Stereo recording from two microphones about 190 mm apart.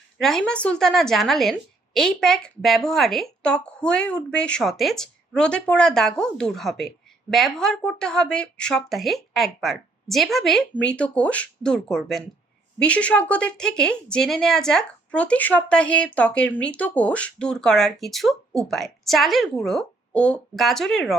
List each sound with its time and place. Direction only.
0.2 s a woman's voice: centre (ahead or behind)